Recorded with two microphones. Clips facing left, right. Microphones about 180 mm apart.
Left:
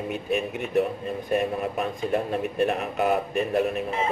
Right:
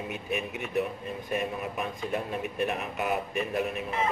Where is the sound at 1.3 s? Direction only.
40° left (ahead or behind).